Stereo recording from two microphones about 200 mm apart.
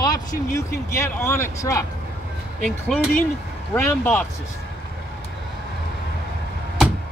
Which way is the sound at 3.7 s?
10° left (ahead or behind).